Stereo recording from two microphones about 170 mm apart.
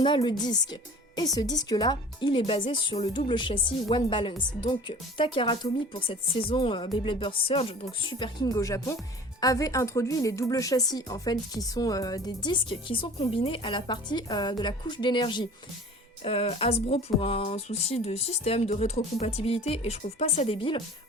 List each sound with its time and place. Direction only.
0.0 s speech: 25° left (ahead or behind)